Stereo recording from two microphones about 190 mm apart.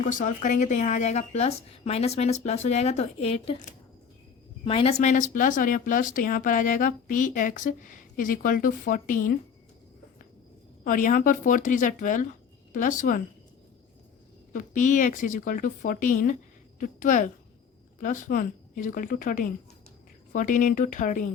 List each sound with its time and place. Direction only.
0.0 s speech: 40° left (ahead or behind)
10.8 s speech: 45° left (ahead or behind)
14.5 s speech: 45° left (ahead or behind)